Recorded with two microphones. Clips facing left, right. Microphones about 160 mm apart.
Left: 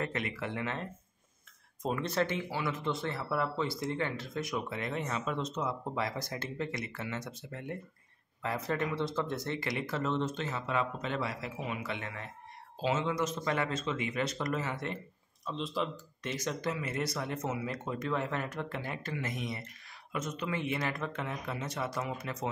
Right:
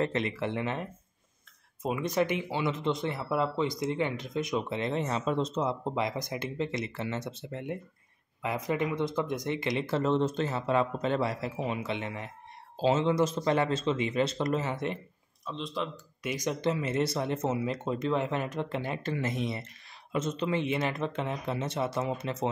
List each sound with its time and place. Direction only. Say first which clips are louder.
0.0 s speech: right 6 dB; 25° right (ahead or behind)
1.8 s speech: right 3 dB; 10° right (ahead or behind)
15.4 s speech: even; centre (ahead or behind)
16.2 s speech: right 4 dB; 15° right (ahead or behind)
16.6 s speech: right 9 dB; 25° right (ahead or behind)